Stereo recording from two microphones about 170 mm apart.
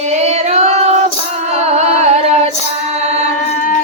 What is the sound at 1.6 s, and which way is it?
Female singing, 40° right (ahead or behind).